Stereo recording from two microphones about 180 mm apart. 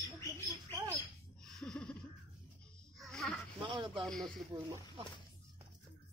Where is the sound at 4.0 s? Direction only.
Centre (ahead or behind).